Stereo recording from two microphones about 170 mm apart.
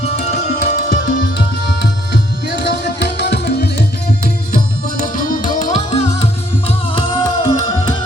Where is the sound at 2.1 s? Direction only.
75° left (ahead or behind).